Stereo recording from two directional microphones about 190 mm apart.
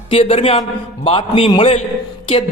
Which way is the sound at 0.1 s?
30° left (ahead or behind).